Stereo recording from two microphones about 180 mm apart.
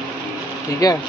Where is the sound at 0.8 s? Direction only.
20° left (ahead or behind).